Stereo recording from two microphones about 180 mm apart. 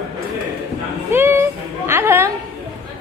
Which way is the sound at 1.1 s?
15° right (ahead or behind).